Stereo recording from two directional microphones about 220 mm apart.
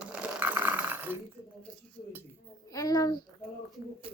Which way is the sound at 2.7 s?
15° left (ahead or behind).